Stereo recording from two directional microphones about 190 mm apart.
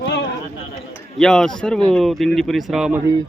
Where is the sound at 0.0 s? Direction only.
65° left (ahead or behind).